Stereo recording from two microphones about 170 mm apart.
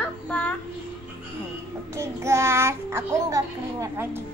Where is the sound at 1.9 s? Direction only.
15° right (ahead or behind).